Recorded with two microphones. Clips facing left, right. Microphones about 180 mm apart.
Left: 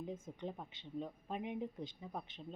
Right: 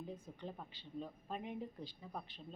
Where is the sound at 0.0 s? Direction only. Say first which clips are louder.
Left 3 dB; 20° left (ahead or behind).